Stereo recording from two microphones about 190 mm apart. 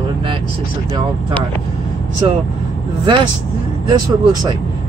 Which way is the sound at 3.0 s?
25° right (ahead or behind).